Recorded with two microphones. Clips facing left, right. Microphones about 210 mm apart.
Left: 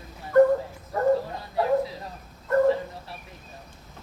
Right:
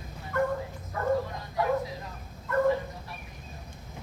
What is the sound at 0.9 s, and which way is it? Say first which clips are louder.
Bow-wow: left 5 dB; 30° left (ahead or behind).